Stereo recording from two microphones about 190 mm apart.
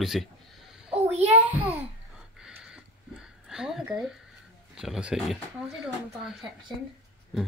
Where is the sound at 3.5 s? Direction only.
5° right (ahead or behind).